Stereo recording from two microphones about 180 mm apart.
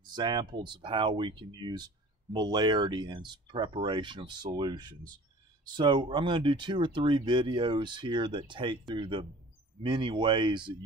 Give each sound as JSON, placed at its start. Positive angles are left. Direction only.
{"t": 0.1, "sound": "speech", "side_deg": -25}